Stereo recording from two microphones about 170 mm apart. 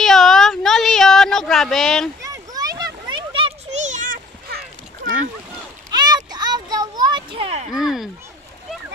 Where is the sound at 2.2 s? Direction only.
20° right (ahead or behind); by 4.6 s 60° right (ahead or behind).